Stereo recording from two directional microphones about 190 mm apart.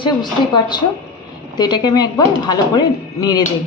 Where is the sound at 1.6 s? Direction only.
20° left (ahead or behind).